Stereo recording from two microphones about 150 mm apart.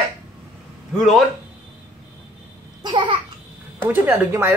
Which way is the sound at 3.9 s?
15° right (ahead or behind).